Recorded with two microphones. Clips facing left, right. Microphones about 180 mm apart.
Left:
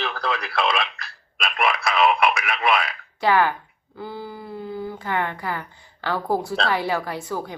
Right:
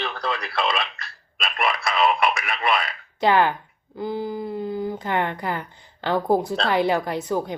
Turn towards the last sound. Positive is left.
turn(degrees=-20)  # may be behind; listen again after turning